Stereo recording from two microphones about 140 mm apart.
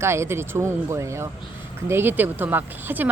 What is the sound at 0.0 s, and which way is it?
A woman's voice, 20° right (ahead or behind).